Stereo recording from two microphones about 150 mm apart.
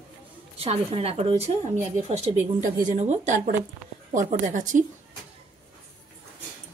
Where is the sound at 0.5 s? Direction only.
45° right (ahead or behind).